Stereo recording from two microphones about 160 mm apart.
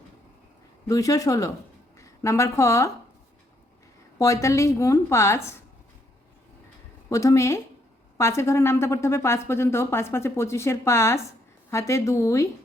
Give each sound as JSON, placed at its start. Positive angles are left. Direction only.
{"t": 0.9, "sound": "a woman's voice", "side_deg": 20}
{"t": 4.2, "sound": "a woman's voice", "side_deg": 20}
{"t": 7.1, "sound": "a woman's voice", "side_deg": 20}